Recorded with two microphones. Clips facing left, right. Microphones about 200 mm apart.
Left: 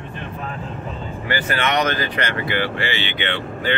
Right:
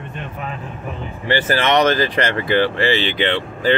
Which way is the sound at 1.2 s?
30° right (ahead or behind).